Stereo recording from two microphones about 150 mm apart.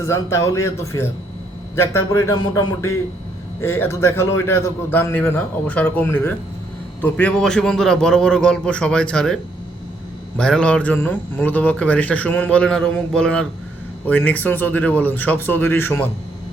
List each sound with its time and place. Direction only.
0.0 s a man's voice: 20° left (ahead or behind)